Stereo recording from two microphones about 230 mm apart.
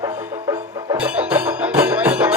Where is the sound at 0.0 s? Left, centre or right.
Centre.